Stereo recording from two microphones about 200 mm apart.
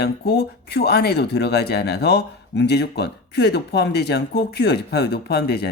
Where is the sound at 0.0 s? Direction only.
55° left (ahead or behind).